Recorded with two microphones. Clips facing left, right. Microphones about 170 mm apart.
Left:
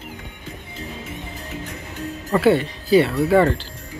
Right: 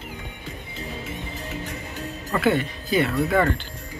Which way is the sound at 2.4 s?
30° left (ahead or behind).